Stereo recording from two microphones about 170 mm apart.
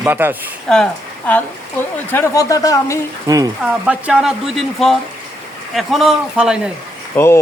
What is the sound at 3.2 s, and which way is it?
Speech, 20° right (ahead or behind).